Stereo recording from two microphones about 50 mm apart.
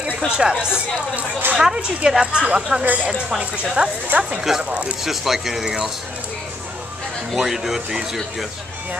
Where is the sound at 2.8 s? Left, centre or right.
Right.